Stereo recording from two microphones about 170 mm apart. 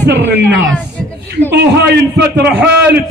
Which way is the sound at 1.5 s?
85° right.